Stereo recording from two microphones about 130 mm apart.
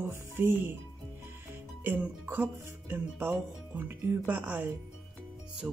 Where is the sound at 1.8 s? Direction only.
15° right (ahead or behind).